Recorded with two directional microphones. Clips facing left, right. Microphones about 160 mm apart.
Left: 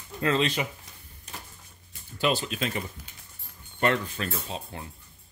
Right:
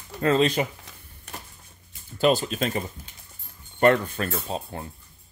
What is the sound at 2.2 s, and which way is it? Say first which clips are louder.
Speech: right 5 dB; 45° right (ahead or behind).